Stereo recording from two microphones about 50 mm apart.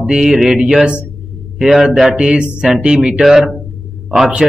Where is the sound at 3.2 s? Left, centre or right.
Centre.